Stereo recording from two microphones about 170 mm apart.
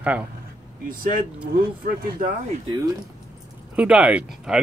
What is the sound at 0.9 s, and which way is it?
Speech, 55° right (ahead or behind).